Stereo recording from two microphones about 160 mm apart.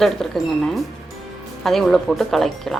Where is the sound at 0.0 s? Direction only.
Centre (ahead or behind).